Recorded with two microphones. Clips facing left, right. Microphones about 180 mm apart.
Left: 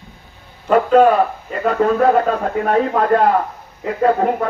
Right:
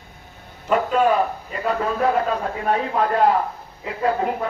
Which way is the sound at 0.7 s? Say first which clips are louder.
Left 7 dB; 50° left (ahead or behind).